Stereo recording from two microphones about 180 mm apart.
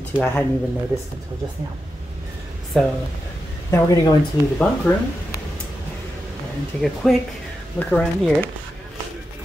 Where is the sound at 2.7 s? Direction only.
5° left (ahead or behind).